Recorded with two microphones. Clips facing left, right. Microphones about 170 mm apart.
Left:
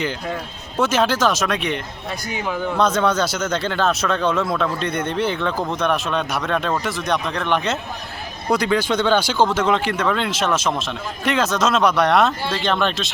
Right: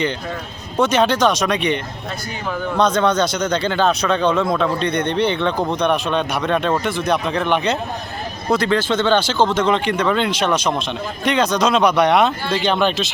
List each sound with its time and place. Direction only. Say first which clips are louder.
0.8 s speech: right 3 dB; 5° left (ahead or behind)
8.4 s speech: right 1 dB; 10° left (ahead or behind)